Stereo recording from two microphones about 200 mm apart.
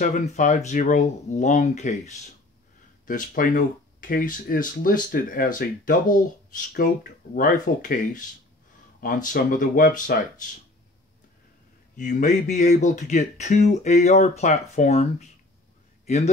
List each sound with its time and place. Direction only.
0.0 s speech: 40° left (ahead or behind)
12.0 s speech: 40° left (ahead or behind)